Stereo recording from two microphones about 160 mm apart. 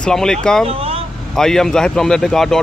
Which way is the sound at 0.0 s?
5° left (ahead or behind).